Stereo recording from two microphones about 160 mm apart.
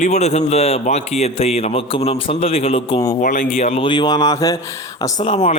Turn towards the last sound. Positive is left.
turn(degrees=45)  # may be behind; listen again after turning